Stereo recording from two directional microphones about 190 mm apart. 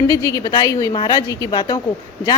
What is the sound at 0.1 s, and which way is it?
A woman's voice, 20° left (ahead or behind).